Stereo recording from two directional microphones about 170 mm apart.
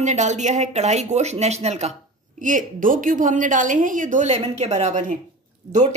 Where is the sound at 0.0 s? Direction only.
45° right (ahead or behind).